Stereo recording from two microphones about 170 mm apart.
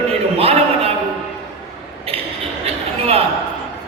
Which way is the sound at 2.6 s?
35° right (ahead or behind).